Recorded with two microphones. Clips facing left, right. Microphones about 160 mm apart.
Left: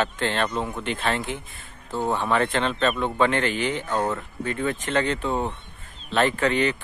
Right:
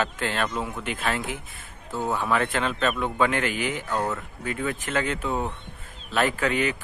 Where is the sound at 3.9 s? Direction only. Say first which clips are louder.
Left 2 dB; 20° left (ahead or behind).